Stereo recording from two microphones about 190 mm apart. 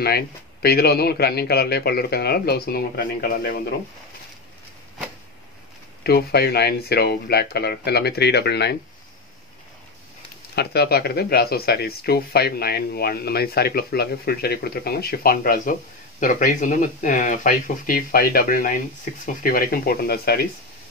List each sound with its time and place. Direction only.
0.0 s speech: 55° left (ahead or behind)
6.0 s speech: 55° left (ahead or behind)
10.5 s speech: 60° left (ahead or behind)